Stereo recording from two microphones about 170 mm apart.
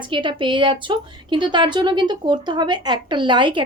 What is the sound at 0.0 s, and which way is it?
A woman's voice, 30° right (ahead or behind).